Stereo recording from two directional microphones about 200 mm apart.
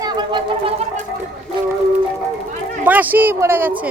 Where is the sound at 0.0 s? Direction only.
25° right (ahead or behind).